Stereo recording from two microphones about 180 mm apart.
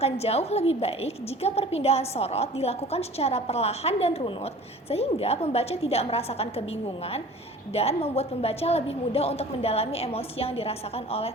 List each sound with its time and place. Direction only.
0.0 s a woman's voice: 35° left (ahead or behind)